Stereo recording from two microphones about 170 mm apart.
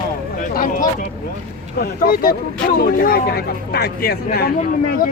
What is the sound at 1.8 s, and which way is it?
Speech, 60° left (ahead or behind).